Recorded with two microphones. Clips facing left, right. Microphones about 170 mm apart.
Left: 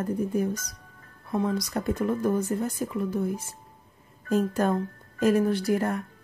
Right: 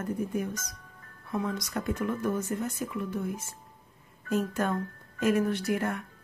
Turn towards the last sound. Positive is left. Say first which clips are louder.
# left 4 dB
turn(degrees=35)  # may be behind; listen again after turning